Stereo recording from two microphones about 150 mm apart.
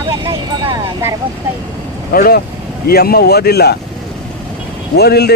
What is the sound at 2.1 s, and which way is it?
Speech, 90° left.